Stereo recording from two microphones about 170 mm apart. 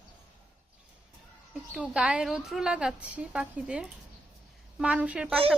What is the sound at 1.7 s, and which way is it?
A woman's voice, 5° right (ahead or behind).